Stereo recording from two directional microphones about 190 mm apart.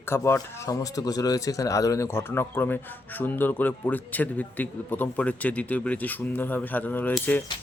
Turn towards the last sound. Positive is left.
turn(degrees=10)  # may be behind; listen again after turning